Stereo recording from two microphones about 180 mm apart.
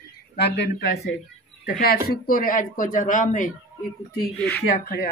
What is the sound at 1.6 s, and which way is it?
Speech, 55° left (ahead or behind).